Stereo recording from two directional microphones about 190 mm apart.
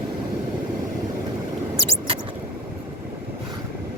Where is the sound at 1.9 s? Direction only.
30° right (ahead or behind).